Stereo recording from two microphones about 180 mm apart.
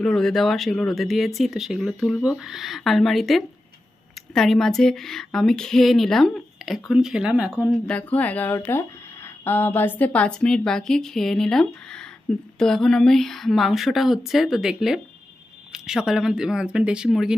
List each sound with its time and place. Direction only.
0.0 s speech: 5° left (ahead or behind)